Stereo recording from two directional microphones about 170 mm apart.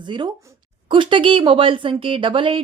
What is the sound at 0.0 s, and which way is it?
Speech, 25° right (ahead or behind).